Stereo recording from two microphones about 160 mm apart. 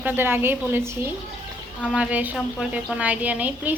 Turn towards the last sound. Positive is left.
turn(degrees=-10)  # may be behind; listen again after turning